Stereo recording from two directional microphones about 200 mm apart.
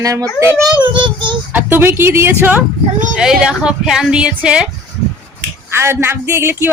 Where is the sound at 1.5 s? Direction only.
10° right (ahead or behind).